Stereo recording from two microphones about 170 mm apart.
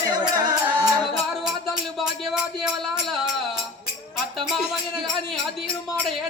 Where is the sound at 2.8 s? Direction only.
Centre (ahead or behind).